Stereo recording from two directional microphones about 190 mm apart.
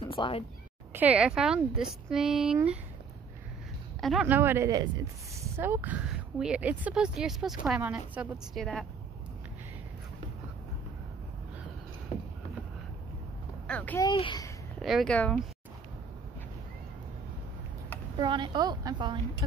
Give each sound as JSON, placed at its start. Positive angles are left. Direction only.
{"t": 0.0, "sound": "speech", "side_deg": 25}
{"t": 0.9, "sound": "speech", "side_deg": -5}
{"t": 4.0, "sound": "speech", "side_deg": 0}
{"t": 4.4, "sound": "speech", "side_deg": -15}
{"t": 8.5, "sound": "speech", "side_deg": 5}
{"t": 13.7, "sound": "a child's voice", "side_deg": 10}
{"t": 14.0, "sound": "a child's voice", "side_deg": 25}
{"t": 14.8, "sound": "speech", "side_deg": 0}
{"t": 18.1, "sound": "a woman's voice", "side_deg": -25}